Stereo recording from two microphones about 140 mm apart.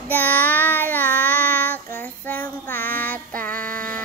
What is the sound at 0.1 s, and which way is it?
Child singing, 10° left (ahead or behind).